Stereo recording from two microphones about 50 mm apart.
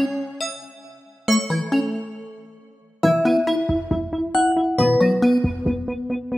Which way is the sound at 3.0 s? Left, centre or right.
Centre.